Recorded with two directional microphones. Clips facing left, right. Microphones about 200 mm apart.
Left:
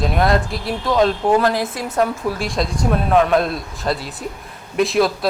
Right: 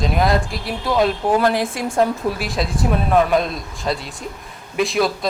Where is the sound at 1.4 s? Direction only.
20° right (ahead or behind).